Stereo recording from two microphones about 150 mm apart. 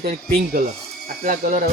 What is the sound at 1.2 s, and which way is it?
Speech, 60° right (ahead or behind).